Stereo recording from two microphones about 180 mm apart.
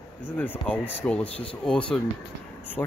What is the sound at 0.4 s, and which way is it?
Speech, 10° left (ahead or behind).